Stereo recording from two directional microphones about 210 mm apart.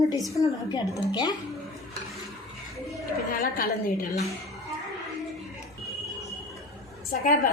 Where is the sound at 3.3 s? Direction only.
45° left (ahead or behind).